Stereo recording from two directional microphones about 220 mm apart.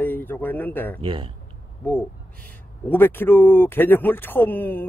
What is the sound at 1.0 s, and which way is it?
Speech, 25° right (ahead or behind).